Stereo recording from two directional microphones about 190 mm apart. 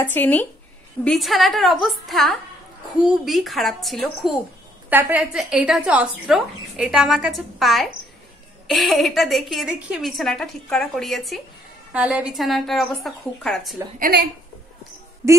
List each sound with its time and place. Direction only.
0.0 s a woman's voice: 10° left (ahead or behind)
13.9 s speech: 50° right (ahead or behind)